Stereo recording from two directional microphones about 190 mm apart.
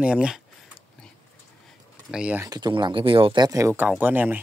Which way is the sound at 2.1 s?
10° right (ahead or behind).